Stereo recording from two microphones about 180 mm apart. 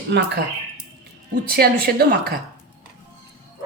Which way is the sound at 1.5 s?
60° right (ahead or behind).